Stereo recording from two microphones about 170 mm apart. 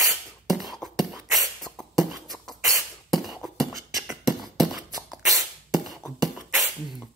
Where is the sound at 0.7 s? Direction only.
Centre (ahead or behind).